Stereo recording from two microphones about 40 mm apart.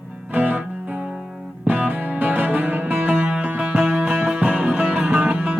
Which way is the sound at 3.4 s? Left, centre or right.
Right.